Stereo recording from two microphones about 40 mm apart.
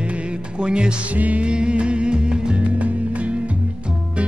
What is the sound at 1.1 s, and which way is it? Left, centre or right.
Music, right.